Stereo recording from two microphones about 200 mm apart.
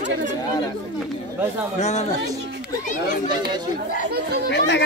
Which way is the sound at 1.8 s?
35° left (ahead or behind).